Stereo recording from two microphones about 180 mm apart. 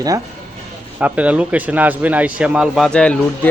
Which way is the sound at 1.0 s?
10° right (ahead or behind).